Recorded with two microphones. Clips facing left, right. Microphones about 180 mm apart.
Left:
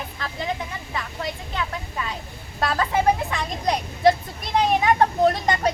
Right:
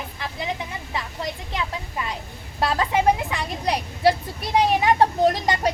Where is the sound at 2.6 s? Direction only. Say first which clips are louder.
Right 1 dB; 15° right (ahead or behind).